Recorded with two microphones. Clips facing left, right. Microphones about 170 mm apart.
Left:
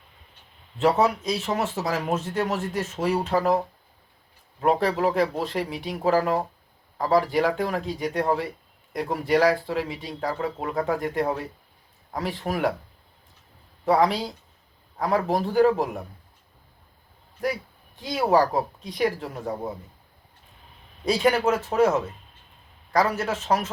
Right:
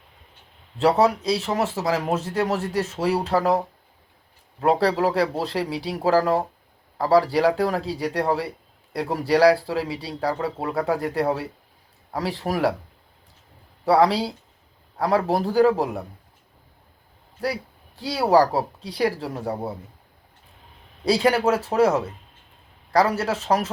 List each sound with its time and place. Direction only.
0.8 s speech: 35° right (ahead or behind)
4.6 s speech: 35° right (ahead or behind)
13.8 s speech: 35° right (ahead or behind)
17.4 s speech: 35° right (ahead or behind)
21.0 s speech: 35° right (ahead or behind)